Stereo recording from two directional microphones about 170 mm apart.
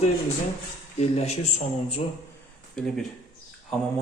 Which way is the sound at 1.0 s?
40° left (ahead or behind).